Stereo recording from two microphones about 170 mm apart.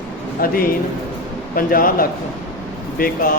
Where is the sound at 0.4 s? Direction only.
60° left (ahead or behind).